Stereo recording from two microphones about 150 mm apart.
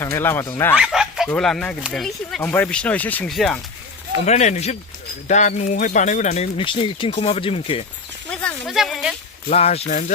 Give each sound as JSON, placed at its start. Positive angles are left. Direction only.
{"t": 0.0, "sound": "speech", "side_deg": 15}
{"t": 0.8, "sound": "chicken", "side_deg": -5}
{"t": 1.3, "sound": "speech", "side_deg": 5}
{"t": 4.3, "sound": "speech", "side_deg": 50}
{"t": 6.6, "sound": "speech", "side_deg": 35}
{"t": 8.3, "sound": "a sound", "side_deg": 5}
{"t": 9.5, "sound": "speech", "side_deg": 45}